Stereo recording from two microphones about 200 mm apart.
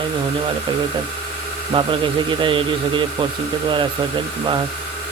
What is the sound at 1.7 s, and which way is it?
Speech, 25° right (ahead or behind).